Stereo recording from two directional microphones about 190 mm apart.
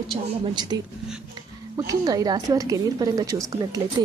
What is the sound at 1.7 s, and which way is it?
A woman's voice, 20° right (ahead or behind).